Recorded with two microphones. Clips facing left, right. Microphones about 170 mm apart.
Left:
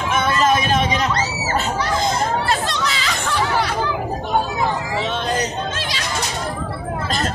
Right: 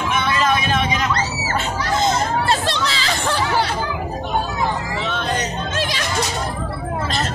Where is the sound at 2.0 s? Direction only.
30° right (ahead or behind).